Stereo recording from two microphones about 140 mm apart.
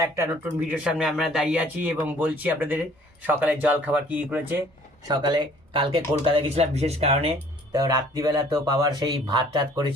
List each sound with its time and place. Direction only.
0.7 s speech: 5° right (ahead or behind)
5.0 s speech: 30° right (ahead or behind); by 7.3 s 45° right (ahead or behind)
7.7 s speech: 25° right (ahead or behind)